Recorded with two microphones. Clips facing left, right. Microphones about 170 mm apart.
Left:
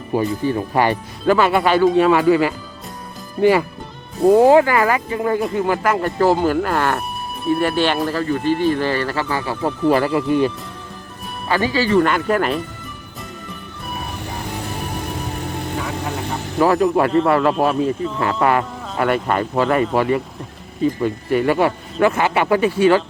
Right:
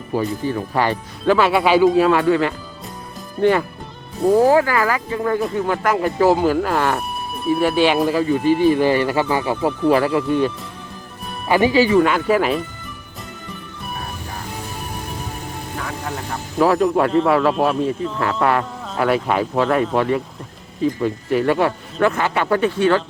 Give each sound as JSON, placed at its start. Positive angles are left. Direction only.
{"t": 0.1, "sound": "speech", "side_deg": 15}
{"t": 1.2, "sound": "a man's voice", "side_deg": 0}
{"t": 4.3, "sound": "speech", "side_deg": 20}
{"t": 5.4, "sound": "a man's voice", "side_deg": 5}
{"t": 9.6, "sound": "a man's voice", "side_deg": 0}
{"t": 11.4, "sound": "speech", "side_deg": -15}
{"t": 11.9, "sound": "a man's voice", "side_deg": 0}
{"t": 16.6, "sound": "a man's voice", "side_deg": 0}
{"t": 22.1, "sound": "speech", "side_deg": 15}